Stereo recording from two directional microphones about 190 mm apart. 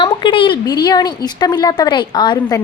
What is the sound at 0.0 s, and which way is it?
Speech, 25° left (ahead or behind).